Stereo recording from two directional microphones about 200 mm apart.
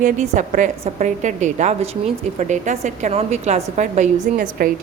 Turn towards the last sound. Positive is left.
turn(degrees=-40)  # may be behind; listen again after turning